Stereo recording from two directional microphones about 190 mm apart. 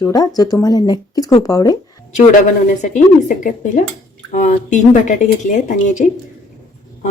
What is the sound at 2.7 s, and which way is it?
Speech, 45° left (ahead or behind).